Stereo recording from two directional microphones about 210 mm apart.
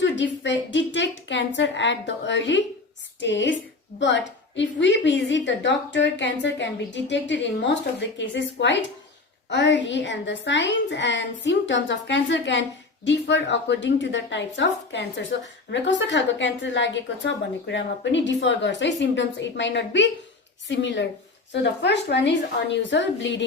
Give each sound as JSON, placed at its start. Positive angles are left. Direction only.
{"t": 0.0, "sound": "speech", "side_deg": 60}